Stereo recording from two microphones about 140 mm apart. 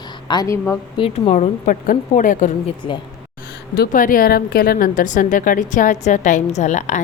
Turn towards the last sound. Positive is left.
turn(degrees=60)  # may be behind; listen again after turning